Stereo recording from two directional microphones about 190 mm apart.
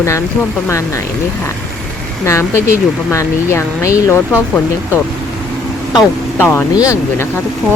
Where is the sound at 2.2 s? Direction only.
15° left (ahead or behind).